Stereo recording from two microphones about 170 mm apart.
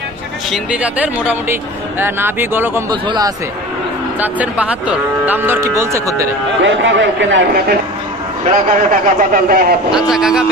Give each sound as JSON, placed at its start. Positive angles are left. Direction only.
{"t": 0.5, "sound": "speech", "side_deg": -5}
{"t": 2.9, "sound": "speech", "side_deg": -25}
{"t": 4.2, "sound": "speech", "side_deg": -10}
{"t": 6.6, "sound": "a man's voice", "side_deg": -90}
{"t": 8.5, "sound": "a man's voice", "side_deg": -50}
{"t": 9.9, "sound": "a man's voice", "side_deg": -5}